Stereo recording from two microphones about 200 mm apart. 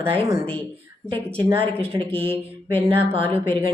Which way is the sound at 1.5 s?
30° right (ahead or behind).